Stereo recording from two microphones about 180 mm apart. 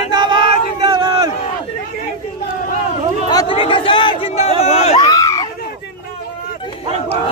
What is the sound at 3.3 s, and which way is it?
Crowd, 25° left (ahead or behind).